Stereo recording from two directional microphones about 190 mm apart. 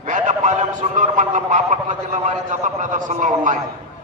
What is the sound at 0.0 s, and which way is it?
A man's voice, 40° right (ahead or behind).